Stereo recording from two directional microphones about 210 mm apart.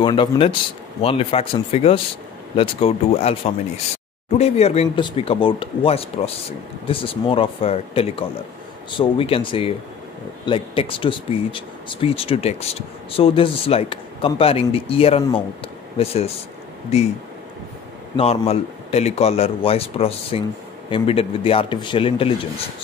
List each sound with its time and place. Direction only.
0.0 s speech: 25° left (ahead or behind)
18.1 s speech: 30° left (ahead or behind)